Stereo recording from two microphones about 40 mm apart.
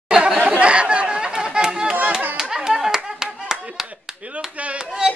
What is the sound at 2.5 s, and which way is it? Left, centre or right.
Clapping, centre.